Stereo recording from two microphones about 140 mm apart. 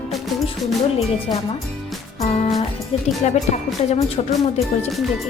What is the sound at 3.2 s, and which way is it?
Speech, 55° left (ahead or behind).